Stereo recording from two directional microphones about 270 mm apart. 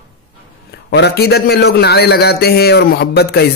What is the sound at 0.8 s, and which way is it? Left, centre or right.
A man's voice, left.